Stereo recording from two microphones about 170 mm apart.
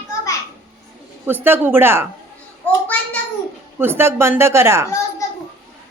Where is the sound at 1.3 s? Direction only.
10° right (ahead or behind).